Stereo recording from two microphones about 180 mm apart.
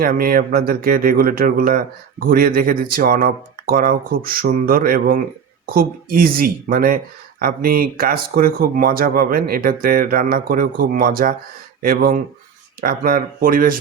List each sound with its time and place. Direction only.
0.0 s speech: 55° right (ahead or behind)